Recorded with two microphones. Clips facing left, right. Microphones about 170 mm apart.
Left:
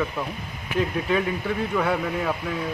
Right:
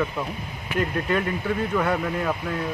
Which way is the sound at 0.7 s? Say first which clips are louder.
Left 1 dB; 5° left (ahead or behind).